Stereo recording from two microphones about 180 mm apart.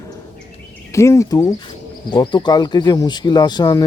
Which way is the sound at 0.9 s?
15° left (ahead or behind).